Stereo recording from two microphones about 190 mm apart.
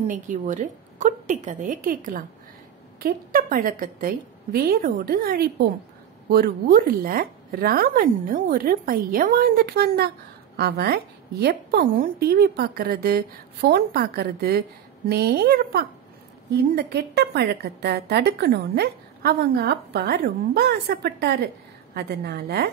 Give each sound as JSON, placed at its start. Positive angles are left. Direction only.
{"t": 0.0, "sound": "a woman's voice", "side_deg": -40}